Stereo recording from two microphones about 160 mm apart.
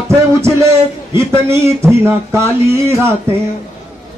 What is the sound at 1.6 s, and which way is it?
Speech, 15° right (ahead or behind).